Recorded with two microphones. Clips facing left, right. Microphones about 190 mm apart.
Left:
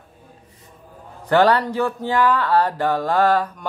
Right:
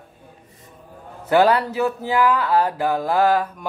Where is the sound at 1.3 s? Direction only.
10° right (ahead or behind).